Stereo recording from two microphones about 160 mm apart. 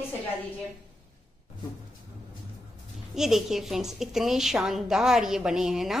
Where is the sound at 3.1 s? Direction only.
Centre (ahead or behind).